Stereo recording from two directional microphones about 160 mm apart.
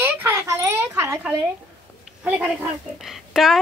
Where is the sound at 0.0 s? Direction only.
15° right (ahead or behind).